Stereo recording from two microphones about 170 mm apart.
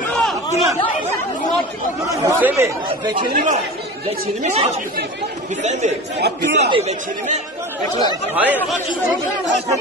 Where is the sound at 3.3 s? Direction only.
45° right (ahead or behind).